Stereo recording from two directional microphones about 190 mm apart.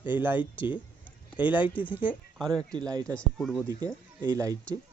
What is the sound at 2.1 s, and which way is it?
Speech, 5° left (ahead or behind).